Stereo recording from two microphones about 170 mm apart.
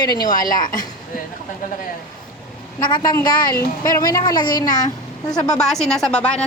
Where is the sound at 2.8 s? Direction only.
25° left (ahead or behind).